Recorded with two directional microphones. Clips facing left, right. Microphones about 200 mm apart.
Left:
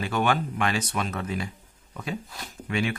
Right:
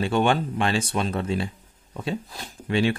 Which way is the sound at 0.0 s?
30° right (ahead or behind).